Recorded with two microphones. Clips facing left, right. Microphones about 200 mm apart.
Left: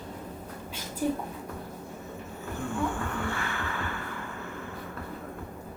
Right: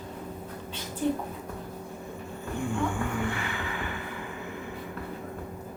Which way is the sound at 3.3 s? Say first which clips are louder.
Even; 15° right (ahead or behind).